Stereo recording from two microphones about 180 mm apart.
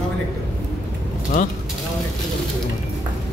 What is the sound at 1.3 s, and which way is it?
Speech, 45° left (ahead or behind).